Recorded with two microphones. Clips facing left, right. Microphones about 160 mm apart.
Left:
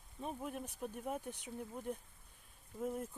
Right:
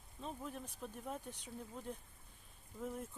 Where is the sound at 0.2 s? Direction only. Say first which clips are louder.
Left 3 dB; 15° left (ahead or behind).